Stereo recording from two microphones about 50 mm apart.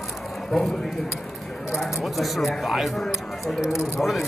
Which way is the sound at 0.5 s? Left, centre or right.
Centre.